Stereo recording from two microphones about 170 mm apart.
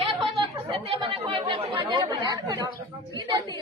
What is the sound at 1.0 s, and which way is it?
Speech, 30° right (ahead or behind).